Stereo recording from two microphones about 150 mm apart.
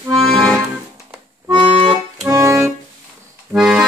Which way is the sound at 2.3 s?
20° right (ahead or behind).